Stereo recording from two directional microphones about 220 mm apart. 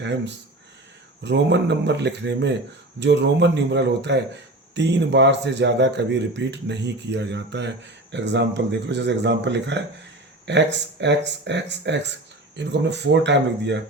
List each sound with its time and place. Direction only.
0.0 s speech: 55° right (ahead or behind)